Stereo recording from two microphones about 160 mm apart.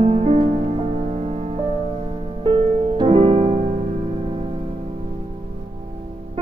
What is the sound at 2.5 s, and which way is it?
Music, 30° right (ahead or behind).